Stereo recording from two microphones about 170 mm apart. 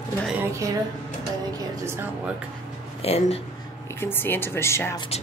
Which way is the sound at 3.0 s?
35° left (ahead or behind).